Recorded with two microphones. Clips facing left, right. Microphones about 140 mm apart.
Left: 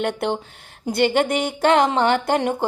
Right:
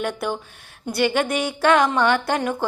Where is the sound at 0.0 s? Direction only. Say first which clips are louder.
Left 3 dB; 60° left (ahead or behind).